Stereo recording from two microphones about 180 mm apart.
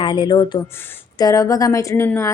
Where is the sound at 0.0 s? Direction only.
25° left (ahead or behind).